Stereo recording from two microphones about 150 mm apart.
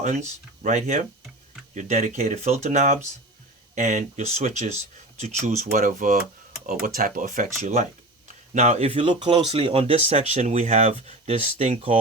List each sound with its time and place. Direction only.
0.0 s speech: 55° right (ahead or behind)
7.6 s speech: 45° right (ahead or behind)